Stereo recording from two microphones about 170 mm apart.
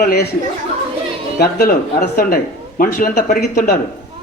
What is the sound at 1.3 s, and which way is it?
Mantra, 65° left (ahead or behind).